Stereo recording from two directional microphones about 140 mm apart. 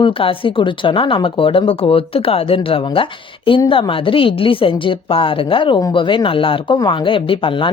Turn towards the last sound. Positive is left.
turn(degrees=35)  # may be behind; listen again after turning